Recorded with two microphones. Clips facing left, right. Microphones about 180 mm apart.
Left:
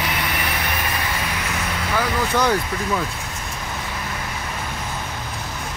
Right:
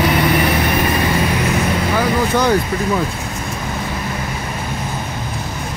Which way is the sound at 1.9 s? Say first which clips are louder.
Right 3 dB; 15° right (ahead or behind).